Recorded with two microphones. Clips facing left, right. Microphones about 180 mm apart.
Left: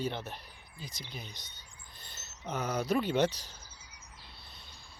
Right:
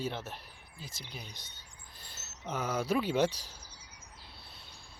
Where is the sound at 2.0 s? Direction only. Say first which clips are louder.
Even; 5° right (ahead or behind).